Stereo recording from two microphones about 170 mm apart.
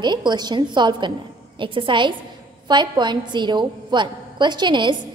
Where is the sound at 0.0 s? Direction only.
25° right (ahead or behind).